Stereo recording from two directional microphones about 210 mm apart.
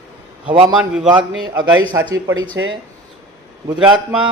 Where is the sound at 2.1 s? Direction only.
15° right (ahead or behind).